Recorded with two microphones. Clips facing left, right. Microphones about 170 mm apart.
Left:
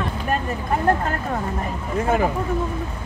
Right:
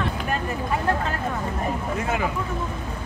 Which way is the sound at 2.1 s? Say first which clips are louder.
Left 7 dB; 40° left (ahead or behind).